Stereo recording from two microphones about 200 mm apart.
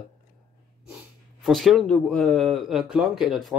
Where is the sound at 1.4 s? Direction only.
Centre (ahead or behind).